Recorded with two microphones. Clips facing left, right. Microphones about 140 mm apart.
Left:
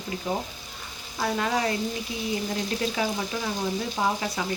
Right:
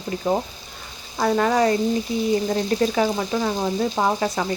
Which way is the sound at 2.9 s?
50° right (ahead or behind).